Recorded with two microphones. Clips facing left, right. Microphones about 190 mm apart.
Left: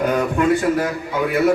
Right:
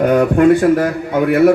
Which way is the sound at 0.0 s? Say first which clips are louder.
Right 7 dB; 60° right (ahead or behind).